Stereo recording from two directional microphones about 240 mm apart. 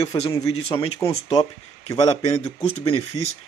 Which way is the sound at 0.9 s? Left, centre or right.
Centre.